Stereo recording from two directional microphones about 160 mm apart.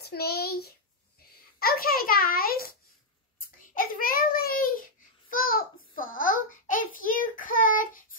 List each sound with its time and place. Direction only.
0.0 s a child's voice: 75° left (ahead or behind); by 4.8 s 60° left (ahead or behind)
5.3 s child singing: 60° left (ahead or behind)